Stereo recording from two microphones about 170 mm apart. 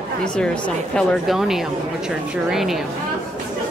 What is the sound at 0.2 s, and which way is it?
A woman's voice, 5° left (ahead or behind).